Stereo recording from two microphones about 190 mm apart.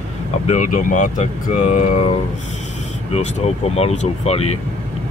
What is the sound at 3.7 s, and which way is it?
Speech, 35° left (ahead or behind).